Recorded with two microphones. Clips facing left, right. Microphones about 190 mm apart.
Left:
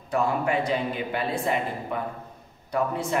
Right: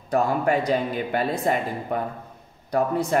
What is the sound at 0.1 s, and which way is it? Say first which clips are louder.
A man's voice: right 3 dB; 40° right (ahead or behind).